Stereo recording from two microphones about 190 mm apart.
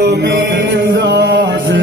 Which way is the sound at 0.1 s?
65° right (ahead or behind).